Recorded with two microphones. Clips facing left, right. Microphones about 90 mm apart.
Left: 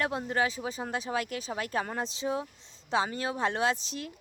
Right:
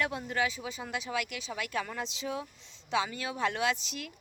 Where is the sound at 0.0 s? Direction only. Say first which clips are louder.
Left 2 dB; 30° left (ahead or behind).